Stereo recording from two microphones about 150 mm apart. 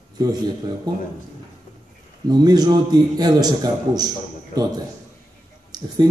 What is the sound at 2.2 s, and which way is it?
A man's voice, 25° right (ahead or behind).